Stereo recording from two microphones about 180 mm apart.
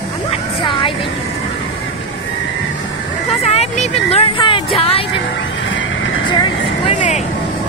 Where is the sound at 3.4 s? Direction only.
35° left (ahead or behind).